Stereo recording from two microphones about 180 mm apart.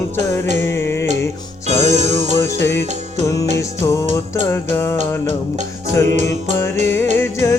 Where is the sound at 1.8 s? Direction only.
40° right (ahead or behind).